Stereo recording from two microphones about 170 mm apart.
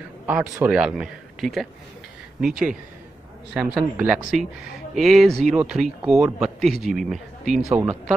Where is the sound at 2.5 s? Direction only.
55° right (ahead or behind).